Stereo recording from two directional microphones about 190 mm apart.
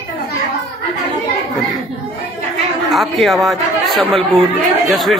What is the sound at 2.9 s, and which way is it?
A man's voice, centre (ahead or behind).